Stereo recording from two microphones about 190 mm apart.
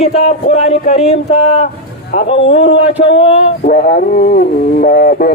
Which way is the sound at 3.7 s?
50° left (ahead or behind).